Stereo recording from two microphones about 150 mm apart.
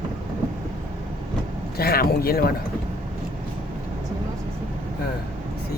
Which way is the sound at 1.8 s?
85° left.